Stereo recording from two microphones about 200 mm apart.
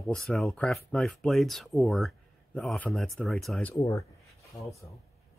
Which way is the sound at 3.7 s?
15° left (ahead or behind).